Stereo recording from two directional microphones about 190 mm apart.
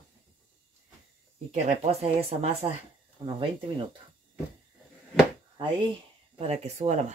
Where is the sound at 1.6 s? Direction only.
30° right (ahead or behind).